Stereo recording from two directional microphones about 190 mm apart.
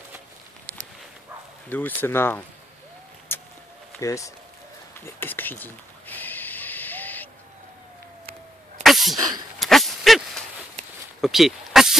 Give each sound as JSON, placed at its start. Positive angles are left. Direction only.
{"t": 1.7, "sound": "speech", "side_deg": 10}
{"t": 3.3, "sound": "vehicle", "side_deg": 10}
{"t": 4.0, "sound": "speech", "side_deg": 15}
{"t": 5.0, "sound": "a sound", "side_deg": 10}
{"t": 8.8, "sound": "sneeze", "side_deg": 0}
{"t": 9.1, "sound": "speech", "side_deg": -20}
{"t": 9.6, "sound": "a sound", "side_deg": 0}
{"t": 11.1, "sound": "snake", "side_deg": 0}